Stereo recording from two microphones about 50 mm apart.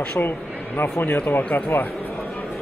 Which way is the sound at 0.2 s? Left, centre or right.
Left.